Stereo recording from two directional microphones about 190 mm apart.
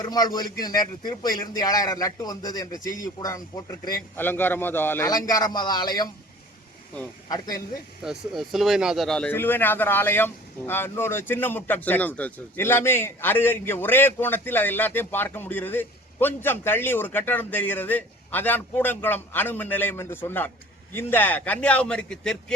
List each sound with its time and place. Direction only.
0.0 s a man's voice: 20° left (ahead or behind)
7.3 s a man's voice: 20° left (ahead or behind)
8.0 s speech: centre (ahead or behind)